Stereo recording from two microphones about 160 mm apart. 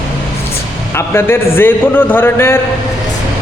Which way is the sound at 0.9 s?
15° left (ahead or behind).